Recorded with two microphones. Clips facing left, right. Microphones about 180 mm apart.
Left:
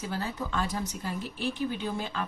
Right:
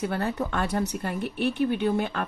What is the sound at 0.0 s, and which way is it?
Speech, 60° right (ahead or behind).